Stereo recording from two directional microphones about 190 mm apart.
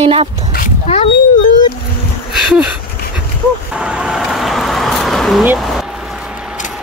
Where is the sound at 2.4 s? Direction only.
5° right (ahead or behind).